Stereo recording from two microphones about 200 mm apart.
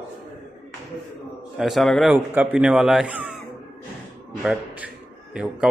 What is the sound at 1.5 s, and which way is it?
Speech, centre (ahead or behind).